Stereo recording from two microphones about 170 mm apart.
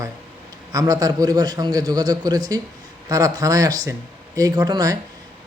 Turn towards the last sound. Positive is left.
turn(degrees=-20)  # may be behind; listen again after turning